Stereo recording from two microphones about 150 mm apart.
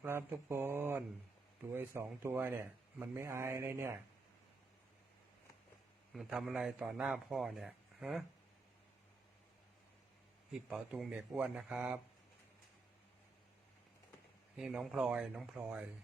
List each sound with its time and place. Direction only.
0.0 s speech: 15° right (ahead or behind)
6.1 s speech: 5° right (ahead or behind)
10.5 s speech: centre (ahead or behind)
14.5 s speech: 5° right (ahead or behind)